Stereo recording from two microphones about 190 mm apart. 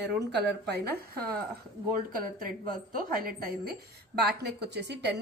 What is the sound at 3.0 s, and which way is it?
Speech, 50° right (ahead or behind).